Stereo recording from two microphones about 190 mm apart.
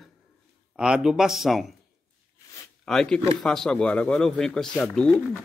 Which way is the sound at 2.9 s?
5° left (ahead or behind).